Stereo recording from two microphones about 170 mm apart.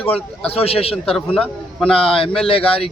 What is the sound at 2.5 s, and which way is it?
Speech, 35° left (ahead or behind).